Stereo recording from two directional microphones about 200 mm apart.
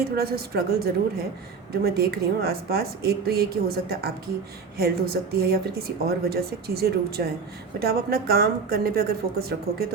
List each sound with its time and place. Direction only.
0.0 s a woman's voice: 50° right (ahead or behind)